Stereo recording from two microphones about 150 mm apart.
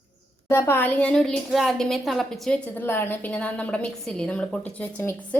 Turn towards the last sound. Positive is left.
turn(degrees=10)  # may be behind; listen again after turning